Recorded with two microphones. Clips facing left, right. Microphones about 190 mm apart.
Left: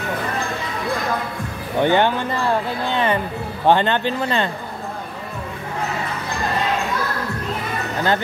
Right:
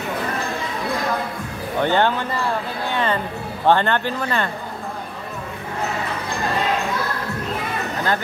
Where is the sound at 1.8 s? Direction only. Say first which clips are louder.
Left 2 dB; 15° left (ahead or behind).